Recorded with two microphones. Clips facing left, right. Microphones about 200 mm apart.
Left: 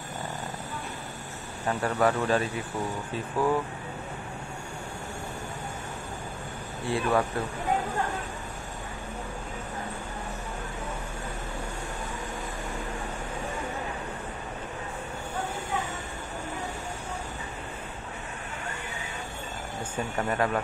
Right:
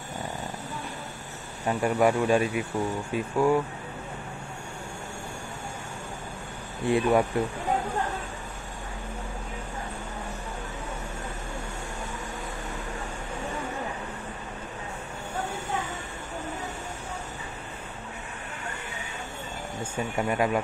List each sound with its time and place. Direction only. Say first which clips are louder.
1.7 s speech: right 3 dB; 15° right (ahead or behind)
6.9 s speech: right 4 dB; 20° right (ahead or behind)
19.8 s speech: right 2 dB; 10° right (ahead or behind)